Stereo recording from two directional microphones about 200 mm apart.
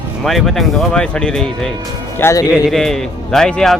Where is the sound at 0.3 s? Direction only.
Centre (ahead or behind).